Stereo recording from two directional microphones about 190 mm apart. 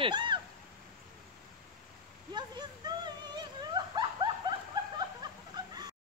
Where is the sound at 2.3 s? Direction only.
20° right (ahead or behind).